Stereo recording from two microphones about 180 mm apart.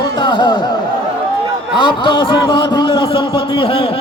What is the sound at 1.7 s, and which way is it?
A man's voice, 25° left (ahead or behind).